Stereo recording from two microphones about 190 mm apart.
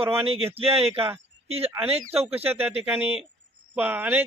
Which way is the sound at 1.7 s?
10° right (ahead or behind).